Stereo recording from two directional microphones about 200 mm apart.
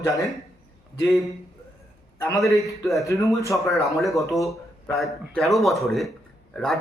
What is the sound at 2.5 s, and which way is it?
A man's voice, 15° left (ahead or behind).